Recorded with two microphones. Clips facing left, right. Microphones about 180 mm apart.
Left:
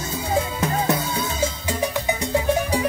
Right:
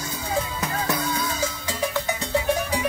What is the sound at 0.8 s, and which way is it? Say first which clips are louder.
Music: left 3 dB; 25° left (ahead or behind).